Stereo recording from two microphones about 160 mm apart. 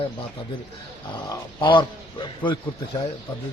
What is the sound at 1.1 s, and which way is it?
Speech, 30° left (ahead or behind).